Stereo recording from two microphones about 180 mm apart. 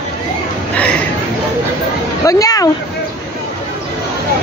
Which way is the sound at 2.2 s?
20° left (ahead or behind).